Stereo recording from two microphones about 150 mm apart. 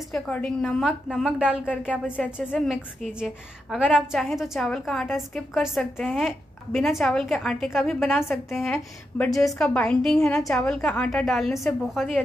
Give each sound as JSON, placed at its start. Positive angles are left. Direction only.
{"t": 0.1, "sound": "a woman's voice", "side_deg": 5}
{"t": 1.9, "sound": "speech", "side_deg": 10}
{"t": 2.3, "sound": "a woman's voice", "side_deg": -5}
{"t": 3.9, "sound": "a woman's voice", "side_deg": 0}
{"t": 8.2, "sound": "speech", "side_deg": 15}
{"t": 8.5, "sound": "a woman's voice", "side_deg": 0}